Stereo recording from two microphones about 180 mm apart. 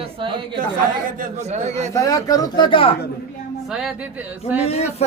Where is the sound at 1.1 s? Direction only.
45° right (ahead or behind).